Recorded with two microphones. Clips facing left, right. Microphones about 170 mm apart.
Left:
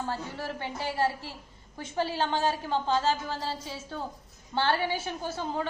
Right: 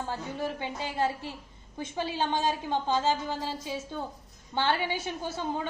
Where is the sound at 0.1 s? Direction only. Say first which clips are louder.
Right 2 dB; 15° right (ahead or behind).